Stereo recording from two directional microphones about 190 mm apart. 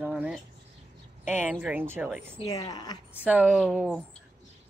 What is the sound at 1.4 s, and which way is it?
Speech, 10° right (ahead or behind).